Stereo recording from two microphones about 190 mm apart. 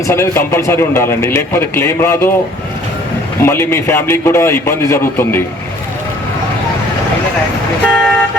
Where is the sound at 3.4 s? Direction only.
15° left (ahead or behind).